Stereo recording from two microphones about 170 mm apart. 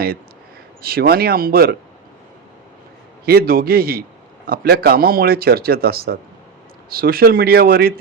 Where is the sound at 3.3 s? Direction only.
65° right (ahead or behind).